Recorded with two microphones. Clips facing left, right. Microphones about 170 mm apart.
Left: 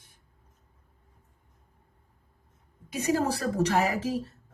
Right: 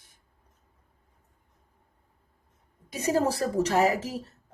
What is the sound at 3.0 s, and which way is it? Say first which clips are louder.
Speech: right 1 dB; 40° right (ahead or behind).